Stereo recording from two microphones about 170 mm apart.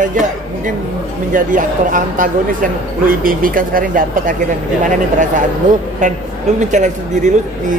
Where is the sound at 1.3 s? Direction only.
50° right (ahead or behind).